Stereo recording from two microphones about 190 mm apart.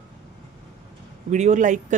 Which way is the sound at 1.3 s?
40° right (ahead or behind).